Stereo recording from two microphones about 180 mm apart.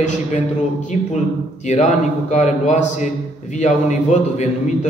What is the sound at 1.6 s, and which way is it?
A man's voice, 40° left (ahead or behind).